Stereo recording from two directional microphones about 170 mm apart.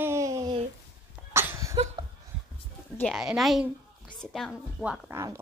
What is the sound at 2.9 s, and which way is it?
A woman's voice, centre (ahead or behind).